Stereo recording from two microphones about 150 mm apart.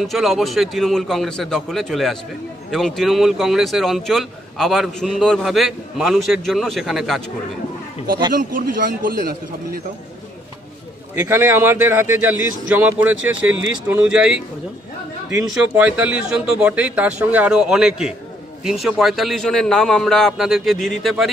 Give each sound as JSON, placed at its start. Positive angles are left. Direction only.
{"t": 0.0, "sound": "speech", "side_deg": 0}
{"t": 8.4, "sound": "a man's voice", "side_deg": -65}
{"t": 11.1, "sound": "speech", "side_deg": -15}